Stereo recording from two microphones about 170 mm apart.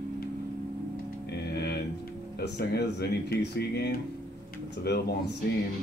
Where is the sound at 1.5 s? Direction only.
70° left (ahead or behind).